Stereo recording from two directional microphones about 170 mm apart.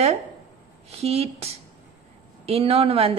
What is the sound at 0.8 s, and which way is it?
A woman's voice, 35° right (ahead or behind).